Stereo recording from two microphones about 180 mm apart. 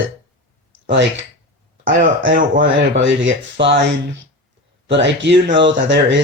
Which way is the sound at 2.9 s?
90° right.